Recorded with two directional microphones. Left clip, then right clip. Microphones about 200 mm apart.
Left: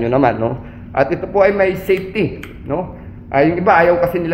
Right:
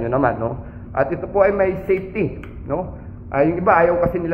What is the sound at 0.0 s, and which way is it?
Speech, 70° left (ahead or behind).